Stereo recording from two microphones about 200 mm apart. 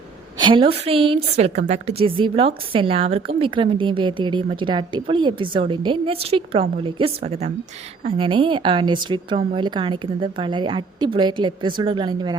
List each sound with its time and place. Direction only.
0.3 s a woman's voice: 25° right (ahead or behind)